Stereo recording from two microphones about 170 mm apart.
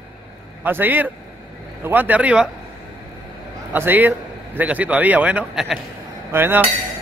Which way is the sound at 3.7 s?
10° right (ahead or behind).